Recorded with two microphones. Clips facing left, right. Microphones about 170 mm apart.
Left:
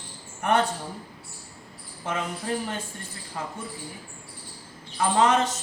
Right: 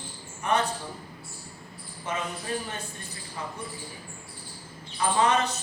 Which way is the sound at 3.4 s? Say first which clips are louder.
Left 3 dB; 70° left (ahead or behind).